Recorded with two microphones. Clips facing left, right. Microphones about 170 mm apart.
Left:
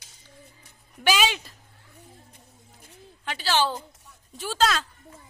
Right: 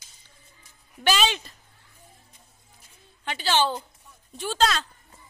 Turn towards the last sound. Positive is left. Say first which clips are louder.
# even
turn(degrees=5)  # may be behind; listen again after turning